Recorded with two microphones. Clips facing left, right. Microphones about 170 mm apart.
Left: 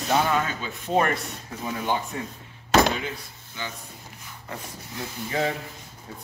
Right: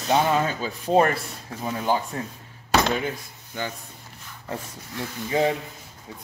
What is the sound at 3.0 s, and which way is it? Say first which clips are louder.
Speech: right 4 dB; 50° right (ahead or behind).